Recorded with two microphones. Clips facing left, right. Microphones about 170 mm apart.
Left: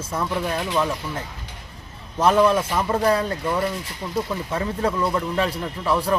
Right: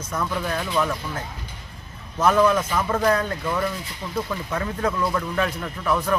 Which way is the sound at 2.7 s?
30° left (ahead or behind).